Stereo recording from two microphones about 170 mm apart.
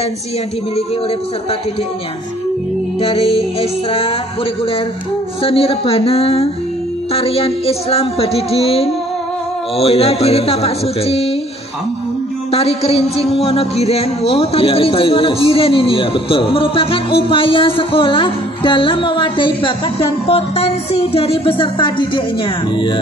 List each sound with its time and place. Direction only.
3.0 s speech: 35° left (ahead or behind)
5.4 s speech: 35° left (ahead or behind)
12.4 s speech: 35° left (ahead or behind)